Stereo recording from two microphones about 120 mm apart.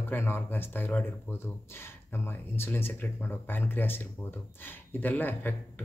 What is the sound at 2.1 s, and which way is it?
Speech, 20° left (ahead or behind).